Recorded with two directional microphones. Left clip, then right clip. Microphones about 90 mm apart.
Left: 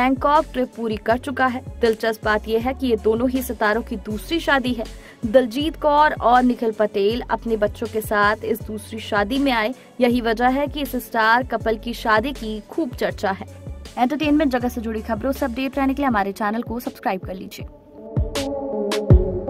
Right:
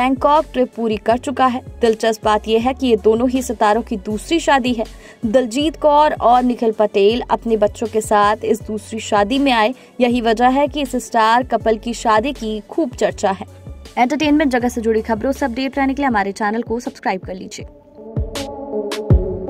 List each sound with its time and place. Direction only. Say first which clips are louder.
0.0 s speech: right 3 dB; 30° right (ahead or behind)
14.0 s speech: right 3 dB; 45° right (ahead or behind)
14.3 s speech: right 4 dB; 25° right (ahead or behind); by 17.5 s 5° right (ahead or behind)
18.3 s music: even; centre (ahead or behind)